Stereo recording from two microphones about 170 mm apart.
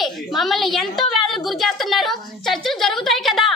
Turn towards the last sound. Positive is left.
turn(degrees=0)  # may be behind; listen again after turning